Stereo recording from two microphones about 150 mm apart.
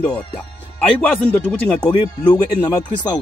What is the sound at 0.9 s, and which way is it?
Speech, 10° left (ahead or behind).